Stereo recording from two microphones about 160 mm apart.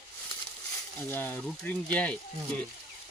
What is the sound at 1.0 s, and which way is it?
Speech, 10° left (ahead or behind).